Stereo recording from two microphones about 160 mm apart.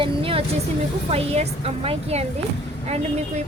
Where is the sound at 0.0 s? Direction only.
35° right (ahead or behind).